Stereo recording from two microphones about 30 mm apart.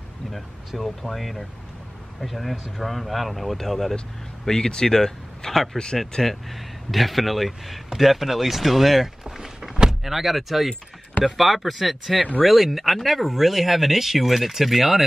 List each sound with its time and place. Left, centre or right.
0.7 s speech: centre
4.5 s speech: centre
6.2 s speech: centre
9.2 s a sound: centre
10.0 s speech: centre